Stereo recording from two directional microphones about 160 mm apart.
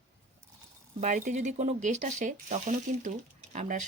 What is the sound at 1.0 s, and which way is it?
Speech, 50° right (ahead or behind).